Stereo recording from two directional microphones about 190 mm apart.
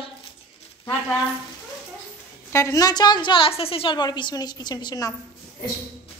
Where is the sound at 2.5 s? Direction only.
15° left (ahead or behind).